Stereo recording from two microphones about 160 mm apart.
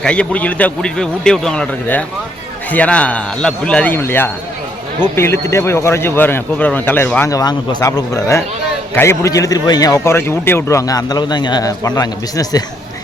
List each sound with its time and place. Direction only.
0.0 s a man's voice: 5° left (ahead or behind); by 12.6 s 25° left (ahead or behind)